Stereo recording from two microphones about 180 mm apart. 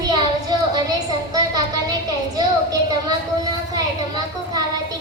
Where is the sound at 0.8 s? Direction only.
20° right (ahead or behind).